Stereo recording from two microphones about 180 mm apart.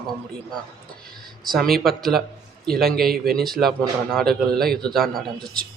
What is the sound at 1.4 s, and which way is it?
Speech, centre (ahead or behind).